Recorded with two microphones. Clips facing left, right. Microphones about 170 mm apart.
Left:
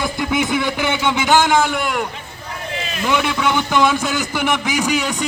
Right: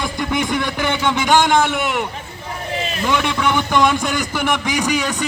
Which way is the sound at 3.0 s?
5° left (ahead or behind).